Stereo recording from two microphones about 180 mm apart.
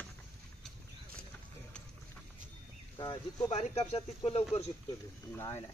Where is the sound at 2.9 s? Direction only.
30° left (ahead or behind).